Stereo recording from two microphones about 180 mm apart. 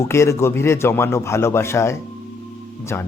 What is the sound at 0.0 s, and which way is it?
Speech, 15° left (ahead or behind).